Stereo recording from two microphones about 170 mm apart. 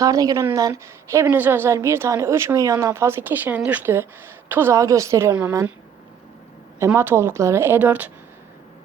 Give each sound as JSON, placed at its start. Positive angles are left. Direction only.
{"t": 0.0, "sound": "a woman's voice", "side_deg": -20}
{"t": 6.7, "sound": "a woman's voice", "side_deg": -15}